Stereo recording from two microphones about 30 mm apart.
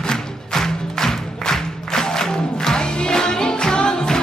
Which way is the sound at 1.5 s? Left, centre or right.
Centre.